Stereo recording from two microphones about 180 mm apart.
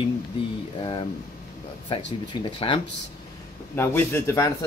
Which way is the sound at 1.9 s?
30° left (ahead or behind).